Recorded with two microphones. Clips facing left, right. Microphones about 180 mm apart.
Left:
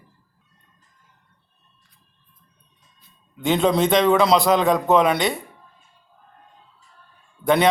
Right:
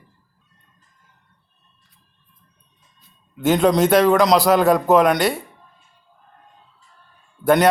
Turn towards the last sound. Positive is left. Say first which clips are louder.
# right 2 dB
turn(degrees=-5)  # may be behind; listen again after turning